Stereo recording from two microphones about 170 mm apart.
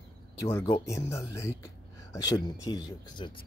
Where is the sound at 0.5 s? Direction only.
15° left (ahead or behind).